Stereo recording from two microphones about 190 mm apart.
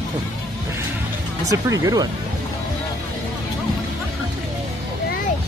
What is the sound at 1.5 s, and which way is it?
Speech, 15° right (ahead or behind).